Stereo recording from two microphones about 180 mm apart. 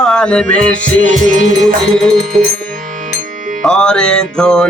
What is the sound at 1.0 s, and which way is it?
Music, 45° right (ahead or behind).